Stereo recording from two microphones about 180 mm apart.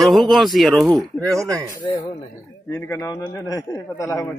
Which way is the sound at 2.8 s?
20° left (ahead or behind).